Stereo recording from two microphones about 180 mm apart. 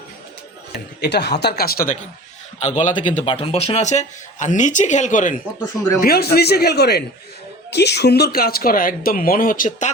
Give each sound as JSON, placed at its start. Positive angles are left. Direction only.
{"t": 1.0, "sound": "speech", "side_deg": 70}
{"t": 2.6, "sound": "speech", "side_deg": 35}
{"t": 6.0, "sound": "speech", "side_deg": 60}